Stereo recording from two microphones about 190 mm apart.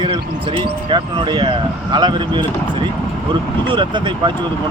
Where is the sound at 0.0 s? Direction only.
25° right (ahead or behind).